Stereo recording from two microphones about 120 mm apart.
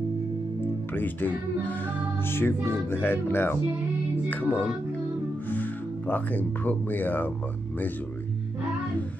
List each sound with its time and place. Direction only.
0.9 s speech: 15° left (ahead or behind)